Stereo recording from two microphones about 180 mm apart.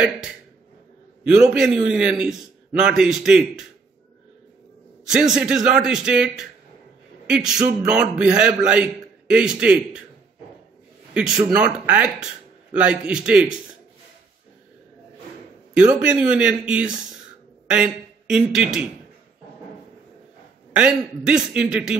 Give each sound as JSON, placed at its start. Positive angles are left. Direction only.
{"t": 1.2, "sound": "a man's voice", "side_deg": -5}
{"t": 5.0, "sound": "a man's voice", "side_deg": -5}
{"t": 11.5, "sound": "a man's voice", "side_deg": -5}
{"t": 15.7, "sound": "a man's voice", "side_deg": -5}
{"t": 20.7, "sound": "a man's voice", "side_deg": -5}